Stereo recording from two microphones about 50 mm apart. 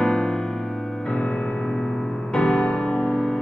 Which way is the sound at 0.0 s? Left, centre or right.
Centre.